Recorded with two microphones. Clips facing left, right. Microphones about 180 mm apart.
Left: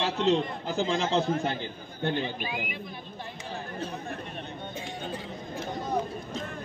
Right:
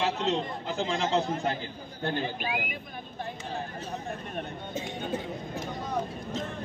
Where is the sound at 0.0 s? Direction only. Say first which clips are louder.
Left 3 dB; 30° left (ahead or behind).